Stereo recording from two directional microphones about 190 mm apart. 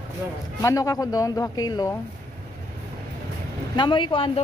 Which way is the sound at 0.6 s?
15° left (ahead or behind).